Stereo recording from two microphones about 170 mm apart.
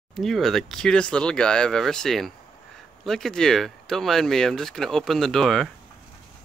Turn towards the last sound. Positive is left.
turn(degrees=0)  # may be behind; listen again after turning